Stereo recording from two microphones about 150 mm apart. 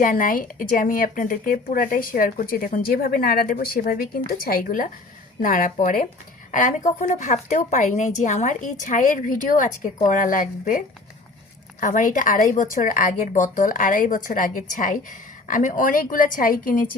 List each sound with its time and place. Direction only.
0.0 s a woman's voice: 65° left (ahead or behind)